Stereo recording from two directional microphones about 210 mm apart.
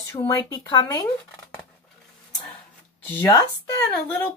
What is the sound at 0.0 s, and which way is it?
Speech, 15° left (ahead or behind).